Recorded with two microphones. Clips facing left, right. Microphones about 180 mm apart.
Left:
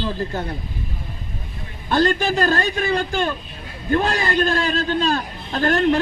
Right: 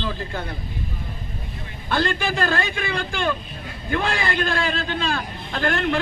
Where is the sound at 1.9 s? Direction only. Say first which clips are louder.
Left 5 dB; 45° left (ahead or behind).